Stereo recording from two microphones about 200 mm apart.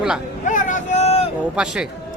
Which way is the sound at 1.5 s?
5° right (ahead or behind).